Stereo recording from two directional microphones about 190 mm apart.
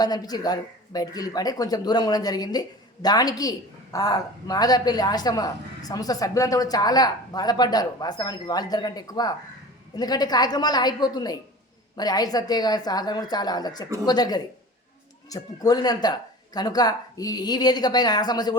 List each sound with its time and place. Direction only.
0.0 s a woman's voice: 20° left (ahead or behind)